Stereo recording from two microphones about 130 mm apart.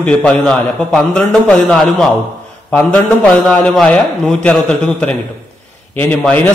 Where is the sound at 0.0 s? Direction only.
10° left (ahead or behind).